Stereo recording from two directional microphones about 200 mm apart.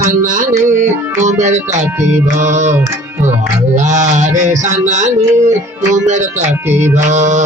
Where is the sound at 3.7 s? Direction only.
35° right (ahead or behind).